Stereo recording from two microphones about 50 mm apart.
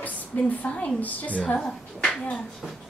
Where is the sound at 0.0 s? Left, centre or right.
Left.